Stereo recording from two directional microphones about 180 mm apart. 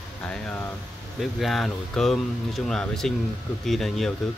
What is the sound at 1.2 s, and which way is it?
Speech, centre (ahead or behind).